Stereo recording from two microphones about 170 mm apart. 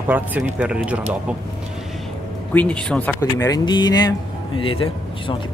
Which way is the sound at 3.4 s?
25° left (ahead or behind).